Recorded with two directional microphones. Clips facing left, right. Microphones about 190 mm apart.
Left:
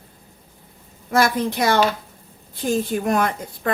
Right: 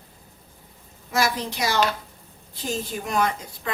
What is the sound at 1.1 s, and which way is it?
A woman's voice, 55° left (ahead or behind).